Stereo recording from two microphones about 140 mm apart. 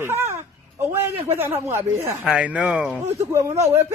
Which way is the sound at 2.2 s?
10° right (ahead or behind).